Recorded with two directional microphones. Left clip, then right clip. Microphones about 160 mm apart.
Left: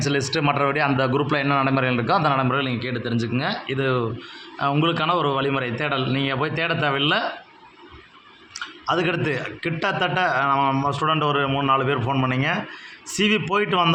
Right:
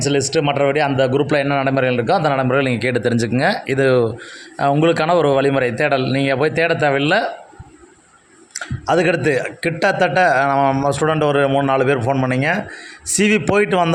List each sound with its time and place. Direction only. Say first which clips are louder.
0.0 s a man's voice: right 5 dB; 25° right (ahead or behind)
2.6 s a man's voice: right 8 dB; 50° right (ahead or behind)
8.5 s a man's voice: right 6 dB; 35° right (ahead or behind)